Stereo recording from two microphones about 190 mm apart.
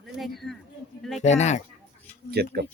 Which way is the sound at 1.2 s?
35° left (ahead or behind).